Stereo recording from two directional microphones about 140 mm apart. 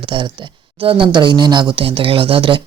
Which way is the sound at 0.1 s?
40° right (ahead or behind).